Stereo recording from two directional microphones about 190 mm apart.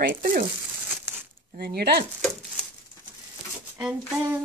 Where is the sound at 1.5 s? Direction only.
55° right (ahead or behind).